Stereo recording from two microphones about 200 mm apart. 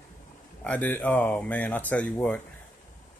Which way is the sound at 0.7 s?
10° left (ahead or behind).